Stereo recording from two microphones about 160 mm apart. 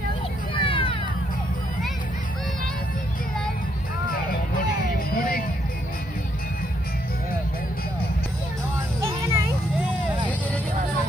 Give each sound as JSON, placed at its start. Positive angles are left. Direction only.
{"t": 0.6, "sound": "a sound", "side_deg": 30}
{"t": 4.1, "sound": "vehicle", "side_deg": 65}
{"t": 9.0, "sound": "music", "side_deg": -20}